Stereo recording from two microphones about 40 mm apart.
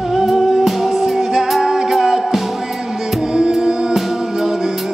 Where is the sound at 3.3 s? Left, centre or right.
Centre.